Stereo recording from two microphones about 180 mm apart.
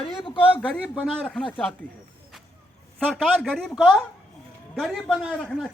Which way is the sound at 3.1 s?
Centre (ahead or behind).